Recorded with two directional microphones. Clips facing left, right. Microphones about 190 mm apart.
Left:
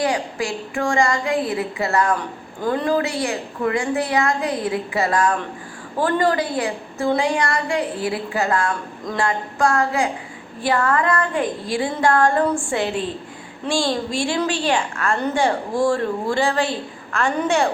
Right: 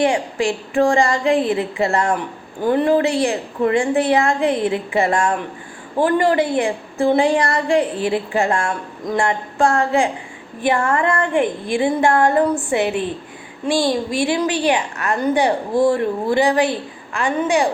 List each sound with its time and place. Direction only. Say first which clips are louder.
0.0 s a woman's voice: right 4 dB; 25° right (ahead or behind); by 17.7 s 10° right (ahead or behind)